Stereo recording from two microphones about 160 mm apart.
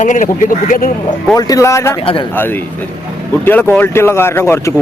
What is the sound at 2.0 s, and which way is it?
Speech, 35° left (ahead or behind).